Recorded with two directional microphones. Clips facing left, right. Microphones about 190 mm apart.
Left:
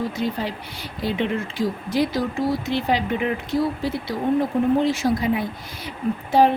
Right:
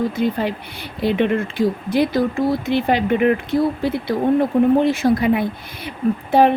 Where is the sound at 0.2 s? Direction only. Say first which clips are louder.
Right 5 dB; 55° right (ahead or behind).